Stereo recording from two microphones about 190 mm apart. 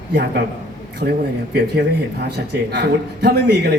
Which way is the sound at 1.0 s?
60° right (ahead or behind).